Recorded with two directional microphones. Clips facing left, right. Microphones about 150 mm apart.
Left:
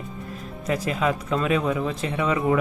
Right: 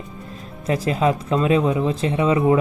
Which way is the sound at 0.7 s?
30° right (ahead or behind).